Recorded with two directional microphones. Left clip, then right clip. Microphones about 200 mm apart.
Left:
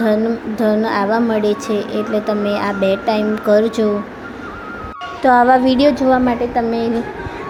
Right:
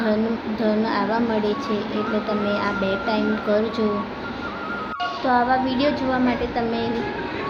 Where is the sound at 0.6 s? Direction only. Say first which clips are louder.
Left 6 dB; 40° left (ahead or behind).